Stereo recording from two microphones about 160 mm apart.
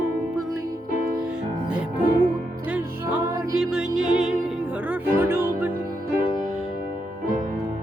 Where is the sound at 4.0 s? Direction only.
5° right (ahead or behind).